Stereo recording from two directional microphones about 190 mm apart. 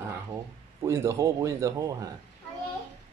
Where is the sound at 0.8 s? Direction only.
15° right (ahead or behind).